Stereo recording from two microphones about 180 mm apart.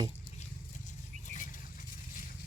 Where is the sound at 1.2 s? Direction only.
45° left (ahead or behind).